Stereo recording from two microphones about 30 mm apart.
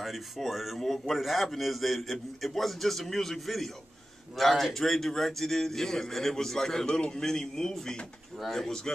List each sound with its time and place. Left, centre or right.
0.5 s speech: centre
0.7 s a man's voice: centre
6.9 s a man's voice: left
7.2 s a man's voice: centre
8.4 s a man's voice: centre
8.6 s a man's voice: centre